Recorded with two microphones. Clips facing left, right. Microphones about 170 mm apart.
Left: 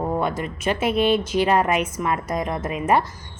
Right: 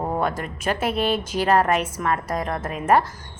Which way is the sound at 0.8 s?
40° right (ahead or behind).